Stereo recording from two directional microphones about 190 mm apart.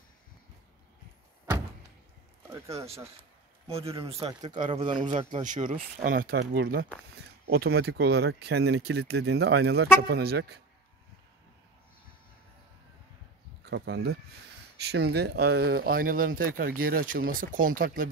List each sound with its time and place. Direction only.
2.5 s speech: 15° right (ahead or behind)
3.2 s a sound: 30° right (ahead or behind)
4.3 s speech: 20° right (ahead or behind)
5.3 s speech: 40° right (ahead or behind); by 10.6 s 55° right (ahead or behind)
13.7 s speech: 65° right (ahead or behind); by 18.1 s 45° right (ahead or behind)